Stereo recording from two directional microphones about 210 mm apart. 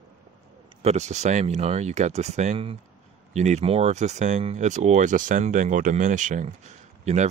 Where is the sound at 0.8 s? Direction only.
30° right (ahead or behind).